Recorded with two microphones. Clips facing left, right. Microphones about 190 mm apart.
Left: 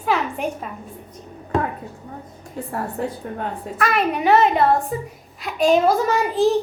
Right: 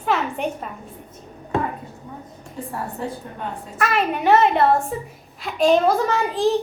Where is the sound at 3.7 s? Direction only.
Centre (ahead or behind).